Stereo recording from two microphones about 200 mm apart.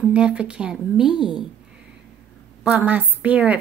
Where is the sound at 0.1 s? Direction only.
5° right (ahead or behind).